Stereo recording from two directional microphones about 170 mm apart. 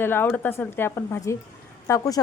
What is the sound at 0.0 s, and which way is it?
A woman's voice, 10° left (ahead or behind).